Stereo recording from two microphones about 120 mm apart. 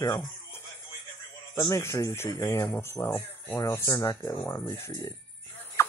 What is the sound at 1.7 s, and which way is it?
Speech, 25° left (ahead or behind).